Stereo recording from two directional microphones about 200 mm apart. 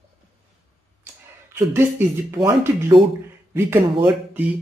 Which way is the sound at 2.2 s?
15° right (ahead or behind).